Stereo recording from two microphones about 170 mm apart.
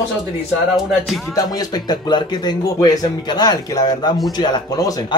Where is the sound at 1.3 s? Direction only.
20° left (ahead or behind).